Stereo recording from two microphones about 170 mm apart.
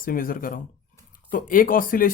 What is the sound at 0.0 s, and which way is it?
Speech, 55° left (ahead or behind).